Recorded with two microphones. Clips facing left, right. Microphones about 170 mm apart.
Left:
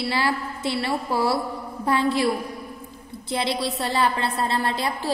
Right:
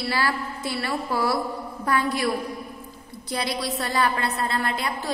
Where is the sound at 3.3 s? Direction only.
25° left (ahead or behind).